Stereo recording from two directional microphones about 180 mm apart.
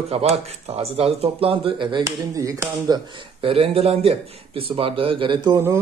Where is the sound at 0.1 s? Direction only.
35° right (ahead or behind).